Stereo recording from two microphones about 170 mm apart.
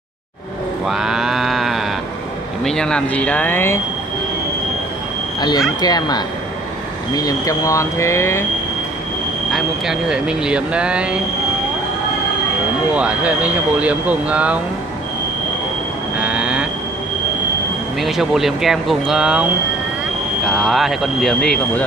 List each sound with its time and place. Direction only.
0.8 s livestock: 5° right (ahead or behind)
2.6 s speech: 5° left (ahead or behind)
5.4 s speech: 25° left (ahead or behind)
9.5 s speech: 5° right (ahead or behind)
12.9 s speech: 10° right (ahead or behind)
16.2 s vehicle: 5° right (ahead or behind)
18.0 s speech: centre (ahead or behind)
20.4 s speech: centre (ahead or behind)